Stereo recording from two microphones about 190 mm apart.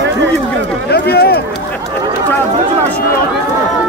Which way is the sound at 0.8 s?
55° left (ahead or behind).